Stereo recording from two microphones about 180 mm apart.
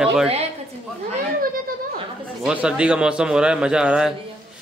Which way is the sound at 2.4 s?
5° right (ahead or behind).